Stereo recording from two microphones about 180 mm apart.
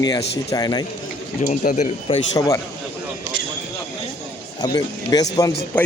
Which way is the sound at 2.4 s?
20° left (ahead or behind).